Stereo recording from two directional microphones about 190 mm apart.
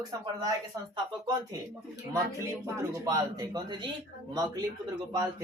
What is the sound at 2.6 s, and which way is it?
A woman's voice, 15° right (ahead or behind).